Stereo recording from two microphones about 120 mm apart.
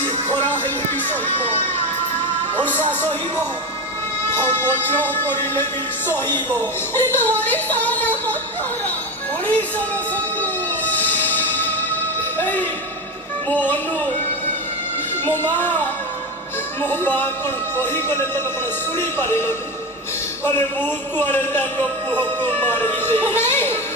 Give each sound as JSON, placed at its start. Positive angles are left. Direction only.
{"t": 1.4, "sound": "music", "side_deg": 15}
{"t": 4.3, "sound": "speech", "side_deg": 20}
{"t": 6.9, "sound": "music", "side_deg": 15}
{"t": 9.5, "sound": "speech", "side_deg": 15}
{"t": 10.4, "sound": "music", "side_deg": 15}
{"t": 12.4, "sound": "speech", "side_deg": 15}
{"t": 15.2, "sound": "speech", "side_deg": 15}
{"t": 18.9, "sound": "music", "side_deg": 20}
{"t": 20.4, "sound": "speech", "side_deg": 15}